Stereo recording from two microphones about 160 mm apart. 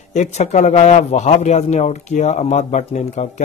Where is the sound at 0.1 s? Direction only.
45° left (ahead or behind).